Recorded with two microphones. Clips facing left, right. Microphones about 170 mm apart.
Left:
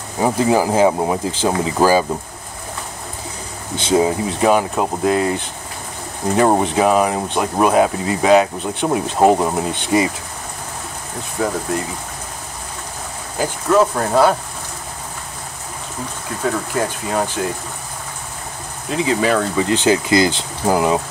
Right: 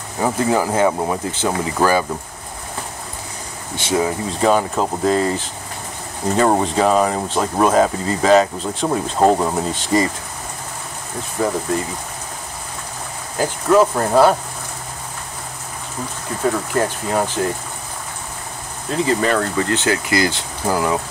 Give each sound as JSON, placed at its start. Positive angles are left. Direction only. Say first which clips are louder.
{"t": 0.2, "sound": "speech", "louder": "left 2 dB", "side_deg": 15}
{"t": 3.8, "sound": "speech", "louder": "left 4 dB", "side_deg": 20}
{"t": 4.5, "sound": "speech", "louder": "even", "side_deg": 10}
{"t": 6.3, "sound": "speech", "louder": "left 1 dB", "side_deg": 15}
{"t": 11.3, "sound": "speech", "louder": "right 1 dB", "side_deg": 0}
{"t": 13.4, "sound": "speech", "louder": "right 1 dB", "side_deg": -5}
{"t": 16.4, "sound": "speech", "louder": "right 1 dB", "side_deg": 0}
{"t": 18.9, "sound": "speech", "louder": "left 1 dB", "side_deg": 5}